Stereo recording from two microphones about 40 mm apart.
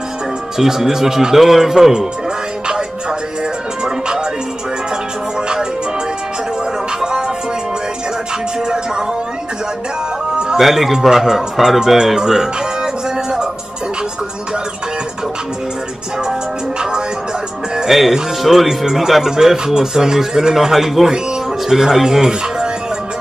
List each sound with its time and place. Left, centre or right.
0.6 s speech: centre
7.0 s music: centre
10.6 s speech: centre
17.7 s speech: centre